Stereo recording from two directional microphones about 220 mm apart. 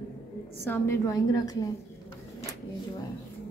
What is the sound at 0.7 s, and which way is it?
A woman's voice, 15° left (ahead or behind).